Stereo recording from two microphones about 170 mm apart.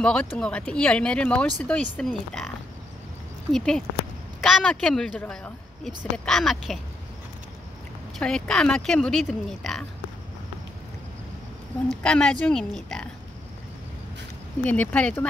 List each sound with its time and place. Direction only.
0.0 s speech: 5° left (ahead or behind)
3.5 s speech: 5° left (ahead or behind)
8.2 s speech: 5° left (ahead or behind)
12.0 s speech: 5° left (ahead or behind)
14.6 s speech: 10° left (ahead or behind)